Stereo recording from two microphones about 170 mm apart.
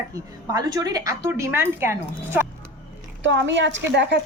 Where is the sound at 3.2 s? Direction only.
90° right.